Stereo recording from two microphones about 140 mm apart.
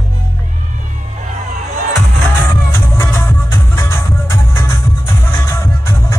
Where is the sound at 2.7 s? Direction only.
15° left (ahead or behind).